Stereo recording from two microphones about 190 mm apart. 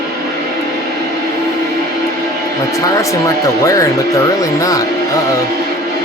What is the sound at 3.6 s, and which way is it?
Speech, 15° left (ahead or behind).